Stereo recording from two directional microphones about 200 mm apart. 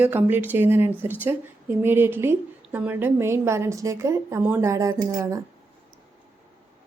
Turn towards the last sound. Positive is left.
turn(degrees=-15)  # may be behind; listen again after turning